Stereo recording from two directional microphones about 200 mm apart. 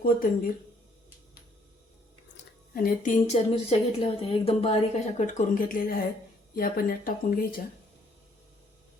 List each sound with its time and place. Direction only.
0.0 s speech: 45° left (ahead or behind)
2.3 s a sound: 45° left (ahead or behind)
3.7 s a woman's voice: 30° left (ahead or behind); by 7.6 s 45° left (ahead or behind)